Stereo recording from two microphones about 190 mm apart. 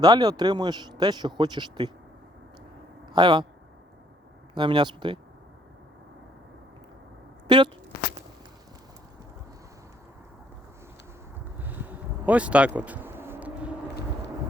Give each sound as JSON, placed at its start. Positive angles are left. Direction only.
{"t": 0.0, "sound": "speech", "side_deg": -20}
{"t": 3.1, "sound": "speech", "side_deg": -25}
{"t": 4.5, "sound": "speech", "side_deg": -25}
{"t": 7.4, "sound": "zipper", "side_deg": -25}
{"t": 11.6, "sound": "a sound", "side_deg": -10}